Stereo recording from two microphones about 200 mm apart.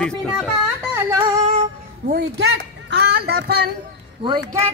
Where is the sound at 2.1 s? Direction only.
55° right (ahead or behind).